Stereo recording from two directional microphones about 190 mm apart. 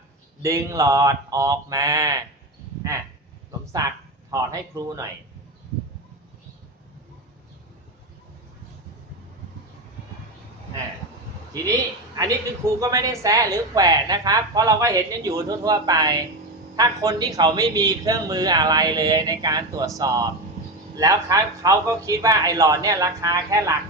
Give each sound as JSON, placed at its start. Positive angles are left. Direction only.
{"t": 0.4, "sound": "a man's voice", "side_deg": -15}
{"t": 3.7, "sound": "speech", "side_deg": -20}
{"t": 12.1, "sound": "a woman's voice", "side_deg": -20}